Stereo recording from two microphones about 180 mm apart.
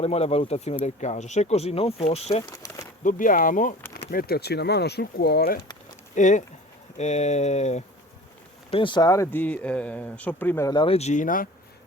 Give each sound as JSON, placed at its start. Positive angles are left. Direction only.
{"t": 0.0, "sound": "speech", "side_deg": 35}
{"t": 2.4, "sound": "speech", "side_deg": 15}
{"t": 3.0, "sound": "speech", "side_deg": 45}
{"t": 6.1, "sound": "speech", "side_deg": 45}
{"t": 8.7, "sound": "speech", "side_deg": 25}
{"t": 10.8, "sound": "speech", "side_deg": 35}